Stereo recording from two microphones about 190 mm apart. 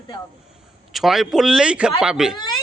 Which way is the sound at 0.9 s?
Centre (ahead or behind).